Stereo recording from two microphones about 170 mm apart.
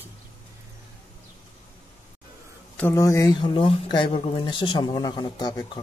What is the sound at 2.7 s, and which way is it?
A man's voice, 15° left (ahead or behind).